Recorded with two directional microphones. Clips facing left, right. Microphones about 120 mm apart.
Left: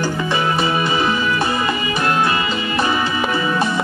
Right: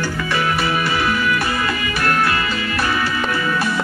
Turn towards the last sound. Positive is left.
turn(degrees=20)  # may be behind; listen again after turning